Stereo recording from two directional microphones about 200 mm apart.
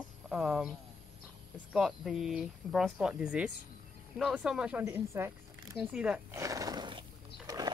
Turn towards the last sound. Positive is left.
turn(degrees=-20)  # may be behind; listen again after turning